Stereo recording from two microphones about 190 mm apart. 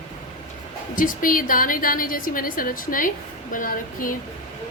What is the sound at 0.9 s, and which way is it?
A woman's voice, 45° left (ahead or behind).